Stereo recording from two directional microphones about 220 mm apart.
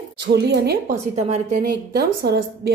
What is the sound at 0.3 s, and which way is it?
Speech, 50° right (ahead or behind).